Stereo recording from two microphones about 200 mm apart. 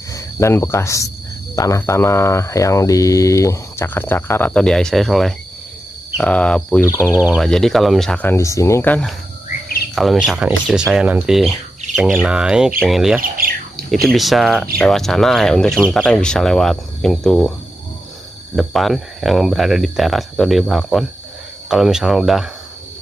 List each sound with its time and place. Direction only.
0.1 s speech: 15° left (ahead or behind)
7.2 s speech: centre (ahead or behind)
13.2 s bird: 45° right (ahead or behind)
14.0 s speech: centre (ahead or behind)
18.6 s speech: centre (ahead or behind)